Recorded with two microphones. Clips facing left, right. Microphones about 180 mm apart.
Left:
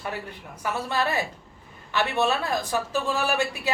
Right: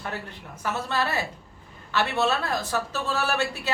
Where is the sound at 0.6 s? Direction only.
15° left (ahead or behind).